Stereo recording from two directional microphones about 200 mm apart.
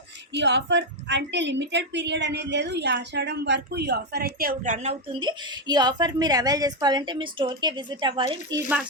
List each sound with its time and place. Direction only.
0.3 s a woman's voice: 65° right (ahead or behind); by 5.3 s 35° right (ahead or behind)
5.6 s a woman's voice: 20° right (ahead or behind)